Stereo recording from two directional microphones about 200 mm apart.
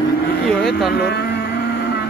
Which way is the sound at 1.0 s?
55° left (ahead or behind).